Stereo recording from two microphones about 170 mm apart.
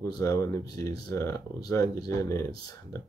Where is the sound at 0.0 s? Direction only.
20° left (ahead or behind).